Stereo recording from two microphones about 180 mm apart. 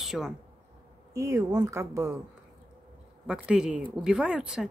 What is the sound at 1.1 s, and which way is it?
Speech, 15° right (ahead or behind).